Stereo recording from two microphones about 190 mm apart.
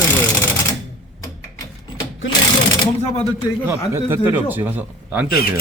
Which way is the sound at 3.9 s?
10° right (ahead or behind).